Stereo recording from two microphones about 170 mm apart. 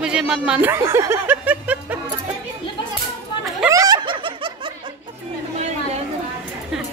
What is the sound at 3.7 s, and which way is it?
Snicker, 20° right (ahead or behind).